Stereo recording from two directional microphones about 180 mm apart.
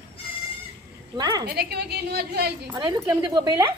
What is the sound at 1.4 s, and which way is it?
A woman's voice, 60° right (ahead or behind).